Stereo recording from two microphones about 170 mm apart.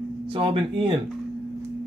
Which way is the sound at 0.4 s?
30° right (ahead or behind).